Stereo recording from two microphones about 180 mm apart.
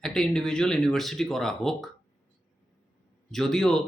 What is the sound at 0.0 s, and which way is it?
Speech, centre (ahead or behind).